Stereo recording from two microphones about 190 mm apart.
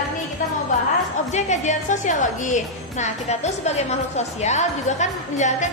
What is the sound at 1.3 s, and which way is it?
A woman's voice, 40° left (ahead or behind).